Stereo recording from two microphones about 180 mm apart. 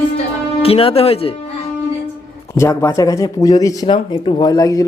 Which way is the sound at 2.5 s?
15° left (ahead or behind).